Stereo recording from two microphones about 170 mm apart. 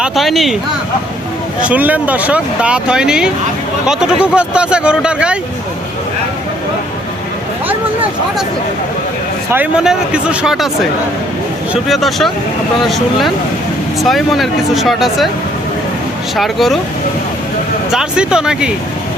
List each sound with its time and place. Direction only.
0.0 s speech: centre (ahead or behind)
1.6 s speech: 10° right (ahead or behind)
9.5 s speech: 10° right (ahead or behind)
11.7 s speech: centre (ahead or behind)
16.3 s speech: centre (ahead or behind)
17.9 s speech: 5° right (ahead or behind)